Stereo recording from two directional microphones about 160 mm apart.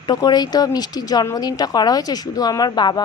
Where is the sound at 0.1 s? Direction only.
25° left (ahead or behind).